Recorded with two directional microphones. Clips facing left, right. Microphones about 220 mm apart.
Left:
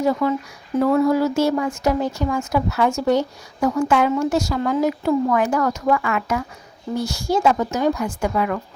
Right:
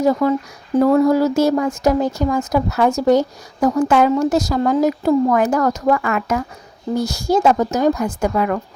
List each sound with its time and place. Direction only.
0.0 s a woman's voice: 40° right (ahead or behind)